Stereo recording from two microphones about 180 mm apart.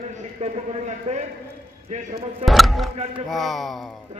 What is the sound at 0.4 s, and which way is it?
Speech, 40° right (ahead or behind).